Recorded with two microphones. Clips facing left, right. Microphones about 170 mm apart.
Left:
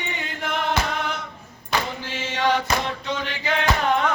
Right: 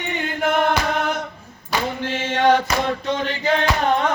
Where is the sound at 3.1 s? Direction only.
50° right (ahead or behind).